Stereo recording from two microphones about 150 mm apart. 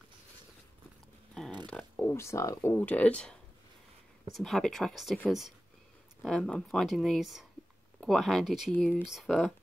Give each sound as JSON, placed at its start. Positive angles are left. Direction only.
{"t": 2.0, "sound": "speech", "side_deg": 15}
{"t": 6.2, "sound": "speech", "side_deg": 5}
{"t": 8.7, "sound": "speech", "side_deg": 10}
{"t": 9.0, "sound": "speech", "side_deg": 0}